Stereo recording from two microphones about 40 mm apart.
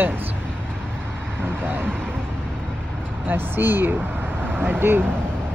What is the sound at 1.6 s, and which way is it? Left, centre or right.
Speech, right.